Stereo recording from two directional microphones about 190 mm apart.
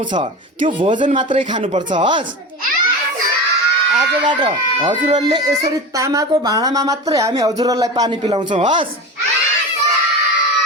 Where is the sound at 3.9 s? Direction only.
25° right (ahead or behind).